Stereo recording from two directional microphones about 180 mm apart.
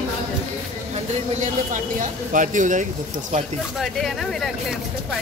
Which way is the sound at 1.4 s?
45° right (ahead or behind).